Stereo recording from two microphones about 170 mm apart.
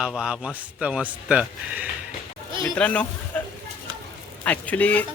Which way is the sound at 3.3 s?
10° left (ahead or behind).